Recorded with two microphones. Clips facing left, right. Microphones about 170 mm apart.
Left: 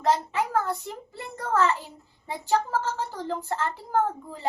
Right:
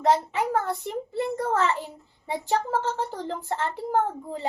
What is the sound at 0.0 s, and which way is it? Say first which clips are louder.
A child's voice: right 2 dB; 20° right (ahead or behind).